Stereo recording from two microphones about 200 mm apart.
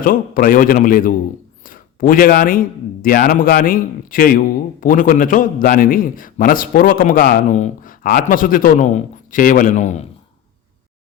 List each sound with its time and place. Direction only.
0.0 s a man's voice: 45° left (ahead or behind)